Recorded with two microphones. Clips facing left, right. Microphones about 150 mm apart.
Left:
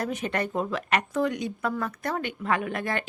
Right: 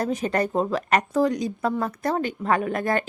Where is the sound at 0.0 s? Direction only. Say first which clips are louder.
Right 5 dB; 35° right (ahead or behind).